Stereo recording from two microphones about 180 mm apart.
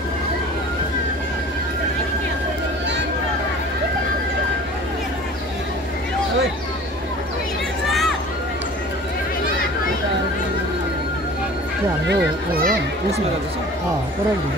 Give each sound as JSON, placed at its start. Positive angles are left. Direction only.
{"t": 12.1, "sound": "children playing", "side_deg": -55}